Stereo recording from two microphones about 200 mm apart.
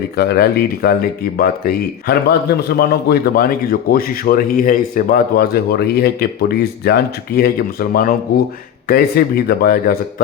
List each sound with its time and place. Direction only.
0.2 s speech: 55° left (ahead or behind)